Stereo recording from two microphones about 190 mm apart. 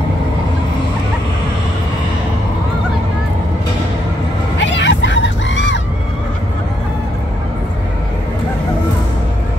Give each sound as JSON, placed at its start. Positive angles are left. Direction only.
{"t": 4.6, "sound": "music", "side_deg": 70}